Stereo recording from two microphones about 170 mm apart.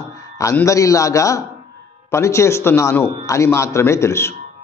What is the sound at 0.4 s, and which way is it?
A man's voice, 20° left (ahead or behind).